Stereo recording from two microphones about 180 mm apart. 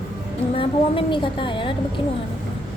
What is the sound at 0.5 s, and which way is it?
A woman's voice, 30° left (ahead or behind).